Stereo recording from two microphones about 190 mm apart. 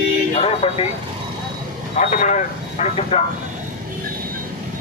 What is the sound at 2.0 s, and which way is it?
A man's voice, 40° left (ahead or behind).